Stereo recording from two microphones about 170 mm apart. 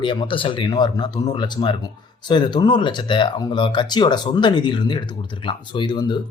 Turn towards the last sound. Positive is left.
turn(degrees=25)  # may be behind; listen again after turning